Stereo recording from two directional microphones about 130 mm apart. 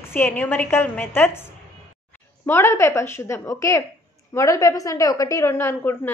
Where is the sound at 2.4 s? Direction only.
20° left (ahead or behind).